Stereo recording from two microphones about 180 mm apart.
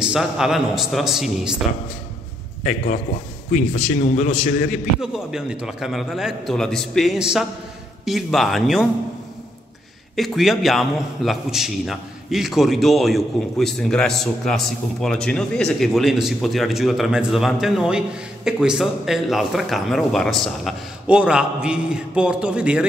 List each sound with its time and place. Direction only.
0.0 s a man's voice: 5° right (ahead or behind)
2.6 s a man's voice: 45° left (ahead or behind)
4.0 s a man's voice: 45° left (ahead or behind)
5.0 s a man's voice: 5° right (ahead or behind)
10.1 s a man's voice: centre (ahead or behind)